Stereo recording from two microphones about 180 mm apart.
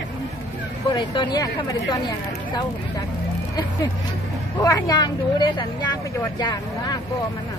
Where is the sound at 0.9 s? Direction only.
20° left (ahead or behind).